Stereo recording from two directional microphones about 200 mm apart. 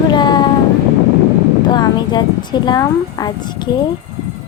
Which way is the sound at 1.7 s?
20° left (ahead or behind).